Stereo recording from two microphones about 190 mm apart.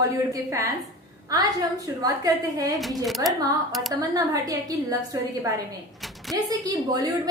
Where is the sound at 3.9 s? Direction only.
20° right (ahead or behind).